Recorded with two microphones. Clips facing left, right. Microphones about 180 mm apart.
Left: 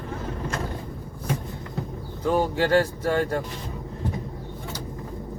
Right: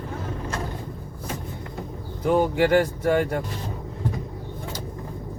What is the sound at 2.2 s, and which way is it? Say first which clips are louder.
Speech: right 3 dB; 15° right (ahead or behind).